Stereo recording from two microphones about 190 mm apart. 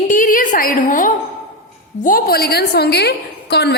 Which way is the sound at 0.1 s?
45° left (ahead or behind).